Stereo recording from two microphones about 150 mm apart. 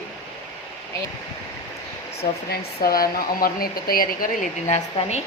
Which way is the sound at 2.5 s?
80° left.